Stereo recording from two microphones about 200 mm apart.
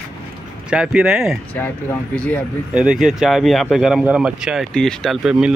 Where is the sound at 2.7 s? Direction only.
5° right (ahead or behind).